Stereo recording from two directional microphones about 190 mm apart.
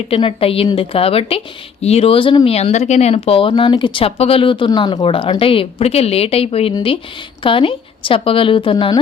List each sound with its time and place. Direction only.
0.1 s speech: 30° left (ahead or behind)